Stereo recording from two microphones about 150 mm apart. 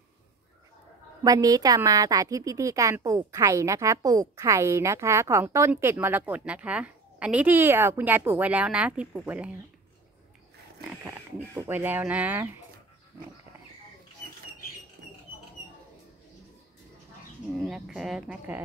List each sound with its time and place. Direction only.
1.2 s a woman's voice: 25° right (ahead or behind); by 9.5 s 10° right (ahead or behind)
11.1 s a woman's voice: 15° right (ahead or behind)
17.6 s speech: centre (ahead or behind)